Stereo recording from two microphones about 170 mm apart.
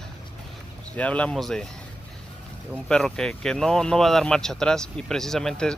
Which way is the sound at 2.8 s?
5° left (ahead or behind).